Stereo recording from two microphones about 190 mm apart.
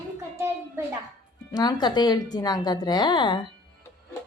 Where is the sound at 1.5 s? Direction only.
20° left (ahead or behind).